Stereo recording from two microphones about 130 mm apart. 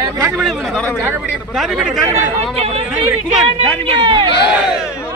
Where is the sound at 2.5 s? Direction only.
50° right (ahead or behind).